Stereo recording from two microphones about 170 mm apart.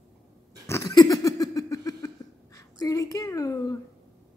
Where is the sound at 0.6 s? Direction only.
20° left (ahead or behind).